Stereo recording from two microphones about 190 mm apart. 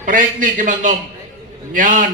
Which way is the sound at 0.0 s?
45° right (ahead or behind).